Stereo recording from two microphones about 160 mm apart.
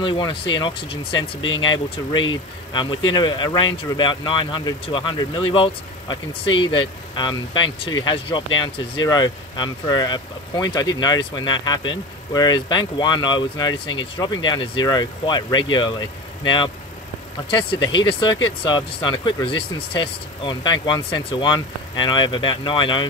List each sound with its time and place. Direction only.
0.0 s speech: 30° left (ahead or behind)
2.7 s speech: 30° left (ahead or behind)